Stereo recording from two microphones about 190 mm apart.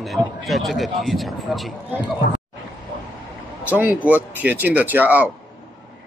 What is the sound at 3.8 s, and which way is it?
Speech, 10° right (ahead or behind).